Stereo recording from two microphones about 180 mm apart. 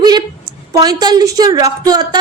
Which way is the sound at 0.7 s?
20° right (ahead or behind).